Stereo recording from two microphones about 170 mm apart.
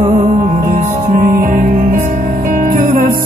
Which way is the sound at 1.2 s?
50° right (ahead or behind).